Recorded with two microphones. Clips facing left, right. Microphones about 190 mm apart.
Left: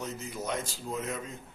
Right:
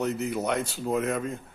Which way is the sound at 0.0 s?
65° right (ahead or behind).